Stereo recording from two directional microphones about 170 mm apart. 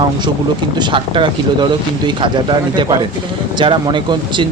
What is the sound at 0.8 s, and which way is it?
Speech, 30° right (ahead or behind).